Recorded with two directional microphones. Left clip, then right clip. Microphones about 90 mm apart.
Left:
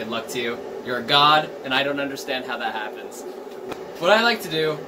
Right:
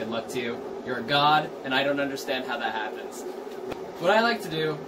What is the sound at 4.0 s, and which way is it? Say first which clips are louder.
Speech: left 4 dB; 45° left (ahead or behind).